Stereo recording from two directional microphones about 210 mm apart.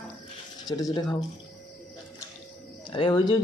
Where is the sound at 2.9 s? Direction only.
20° left (ahead or behind).